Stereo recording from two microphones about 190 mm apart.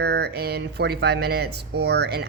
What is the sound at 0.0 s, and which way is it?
Speech, 60° right (ahead or behind).